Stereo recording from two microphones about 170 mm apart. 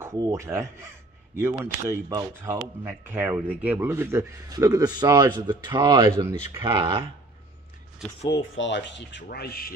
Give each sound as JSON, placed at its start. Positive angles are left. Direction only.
{"t": 0.0, "sound": "a man's voice", "side_deg": -15}
{"t": 8.3, "sound": "speech", "side_deg": 90}